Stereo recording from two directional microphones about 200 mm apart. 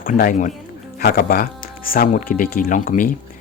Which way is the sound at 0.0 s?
45° left (ahead or behind).